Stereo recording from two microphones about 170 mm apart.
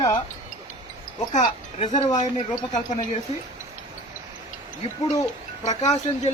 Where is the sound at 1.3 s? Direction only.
45° left (ahead or behind).